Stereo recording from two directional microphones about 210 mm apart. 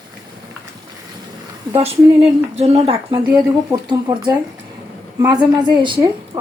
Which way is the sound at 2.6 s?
25° right (ahead or behind).